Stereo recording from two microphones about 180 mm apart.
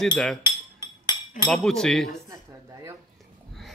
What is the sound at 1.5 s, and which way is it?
Speech, 5° left (ahead or behind).